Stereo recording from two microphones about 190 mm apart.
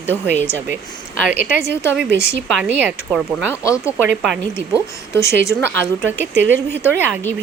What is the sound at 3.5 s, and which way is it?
Speech, 15° left (ahead or behind).